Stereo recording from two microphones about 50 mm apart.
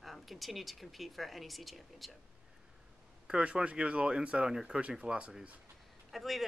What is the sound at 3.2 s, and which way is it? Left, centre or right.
Speech, right.